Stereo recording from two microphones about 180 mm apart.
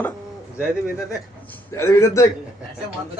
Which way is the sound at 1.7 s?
15° left (ahead or behind).